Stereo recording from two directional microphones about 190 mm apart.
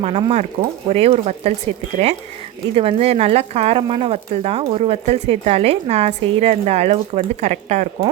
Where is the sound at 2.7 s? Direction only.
30° right (ahead or behind).